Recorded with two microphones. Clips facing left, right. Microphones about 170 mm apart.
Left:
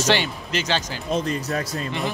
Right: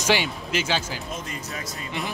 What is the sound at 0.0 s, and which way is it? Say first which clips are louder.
Speech: left 2 dB; 10° right (ahead or behind).